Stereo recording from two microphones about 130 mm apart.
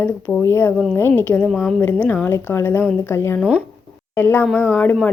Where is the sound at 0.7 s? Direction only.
Centre (ahead or behind).